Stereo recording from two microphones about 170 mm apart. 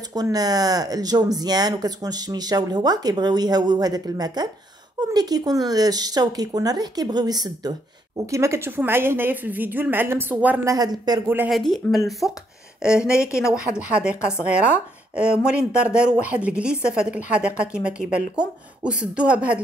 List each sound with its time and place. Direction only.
0.1 s a woman's voice: 20° right (ahead or behind)
11.2 s a woman's voice: 10° right (ahead or behind)
11.5 s a woman's voice: centre (ahead or behind)